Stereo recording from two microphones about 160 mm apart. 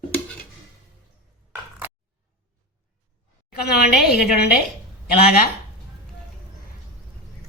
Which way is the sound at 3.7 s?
80° left.